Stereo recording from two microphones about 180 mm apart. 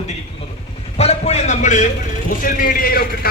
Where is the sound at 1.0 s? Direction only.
35° left (ahead or behind).